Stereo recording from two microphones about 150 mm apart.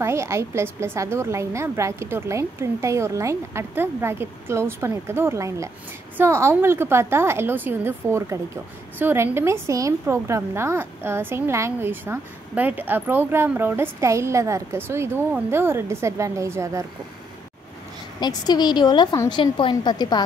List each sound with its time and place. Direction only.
0.0 s a woman's voice: 20° right (ahead or behind)
18.2 s a woman's voice: 30° left (ahead or behind)